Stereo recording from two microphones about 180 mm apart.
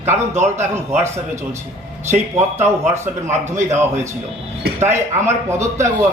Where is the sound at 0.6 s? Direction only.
15° right (ahead or behind).